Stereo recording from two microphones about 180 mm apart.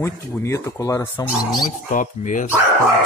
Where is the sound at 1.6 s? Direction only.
50° left (ahead or behind).